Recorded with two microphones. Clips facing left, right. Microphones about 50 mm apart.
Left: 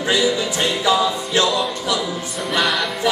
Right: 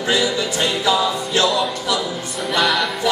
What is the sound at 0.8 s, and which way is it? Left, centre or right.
Music, centre.